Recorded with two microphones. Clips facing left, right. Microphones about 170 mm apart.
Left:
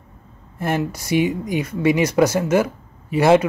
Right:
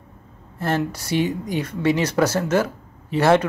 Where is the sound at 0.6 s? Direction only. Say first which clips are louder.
Left 1 dB; 15° left (ahead or behind).